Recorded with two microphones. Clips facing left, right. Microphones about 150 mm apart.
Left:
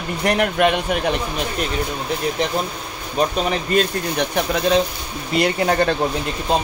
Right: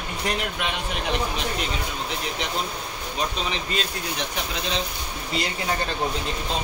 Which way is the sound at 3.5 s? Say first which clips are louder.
Left 9 dB; 55° left (ahead or behind).